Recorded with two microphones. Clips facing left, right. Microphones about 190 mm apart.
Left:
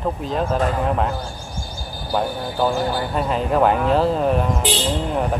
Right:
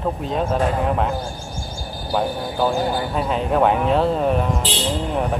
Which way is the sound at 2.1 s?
Centre (ahead or behind).